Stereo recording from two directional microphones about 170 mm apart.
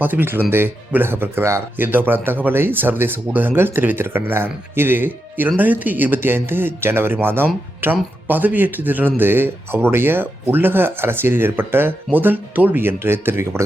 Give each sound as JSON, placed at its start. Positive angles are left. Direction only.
{"t": 0.0, "sound": "speech", "side_deg": -10}